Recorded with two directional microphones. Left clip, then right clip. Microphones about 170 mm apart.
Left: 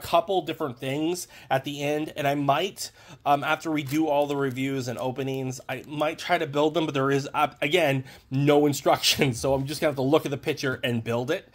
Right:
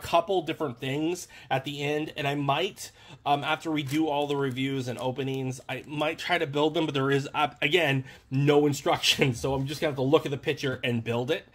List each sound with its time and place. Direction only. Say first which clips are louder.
0.1 s speech: left 2 dB; 15° left (ahead or behind)
0.8 s speech: left 3 dB; 30° left (ahead or behind)